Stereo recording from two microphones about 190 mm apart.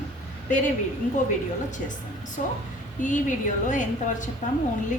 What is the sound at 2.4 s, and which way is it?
A woman's voice, 45° left (ahead or behind).